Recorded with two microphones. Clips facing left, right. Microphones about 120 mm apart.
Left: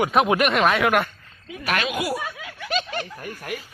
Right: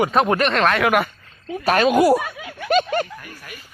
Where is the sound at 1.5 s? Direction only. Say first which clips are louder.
Right 9 dB; 35° right (ahead or behind).